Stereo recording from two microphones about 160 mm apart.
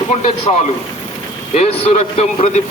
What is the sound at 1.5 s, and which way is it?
A man's voice, 40° left (ahead or behind).